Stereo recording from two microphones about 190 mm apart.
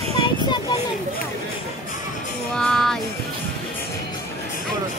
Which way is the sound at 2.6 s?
5° left (ahead or behind).